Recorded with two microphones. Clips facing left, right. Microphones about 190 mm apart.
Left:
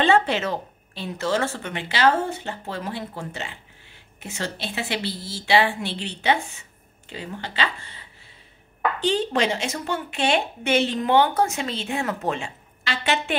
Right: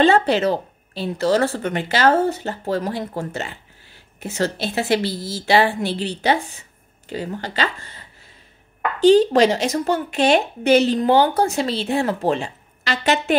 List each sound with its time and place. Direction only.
0.0 s speech: 35° right (ahead or behind)